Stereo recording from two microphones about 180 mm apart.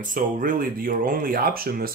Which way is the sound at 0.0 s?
50° right (ahead or behind).